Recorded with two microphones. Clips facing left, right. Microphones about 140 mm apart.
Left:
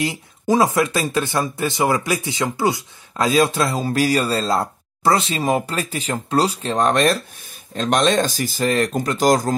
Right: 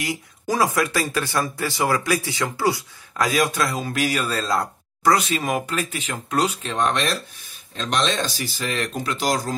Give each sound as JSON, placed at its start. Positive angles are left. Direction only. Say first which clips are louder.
{"t": 0.0, "sound": "speech", "louder": "left 4 dB", "side_deg": 25}